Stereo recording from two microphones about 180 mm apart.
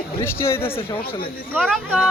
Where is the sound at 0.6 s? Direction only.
30° left (ahead or behind).